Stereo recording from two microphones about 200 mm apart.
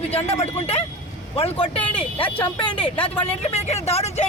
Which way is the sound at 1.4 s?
30° left (ahead or behind).